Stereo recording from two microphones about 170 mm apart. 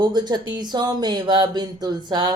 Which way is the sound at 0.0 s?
25° right (ahead or behind).